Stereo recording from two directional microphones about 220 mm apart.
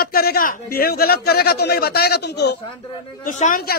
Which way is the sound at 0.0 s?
45° left (ahead or behind).